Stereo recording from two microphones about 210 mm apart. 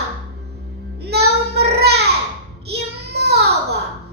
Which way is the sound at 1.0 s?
50° right (ahead or behind).